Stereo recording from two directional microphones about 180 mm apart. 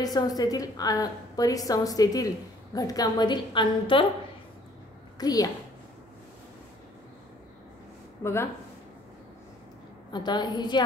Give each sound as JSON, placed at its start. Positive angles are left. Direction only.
{"t": 0.0, "sound": "a woman's voice", "side_deg": 20}
{"t": 5.2, "sound": "a woman's voice", "side_deg": 20}
{"t": 8.2, "sound": "speech", "side_deg": 15}
{"t": 10.1, "sound": "a woman's voice", "side_deg": 25}